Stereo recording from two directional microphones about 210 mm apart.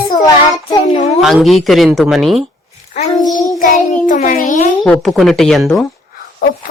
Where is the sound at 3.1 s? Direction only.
20° left (ahead or behind).